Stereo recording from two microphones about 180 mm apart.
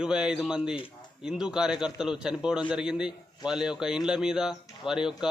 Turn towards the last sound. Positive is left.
turn(degrees=-5)  # may be behind; listen again after turning